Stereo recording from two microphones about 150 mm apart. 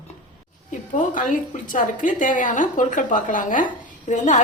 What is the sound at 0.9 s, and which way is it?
A woman's voice, 60° left (ahead or behind).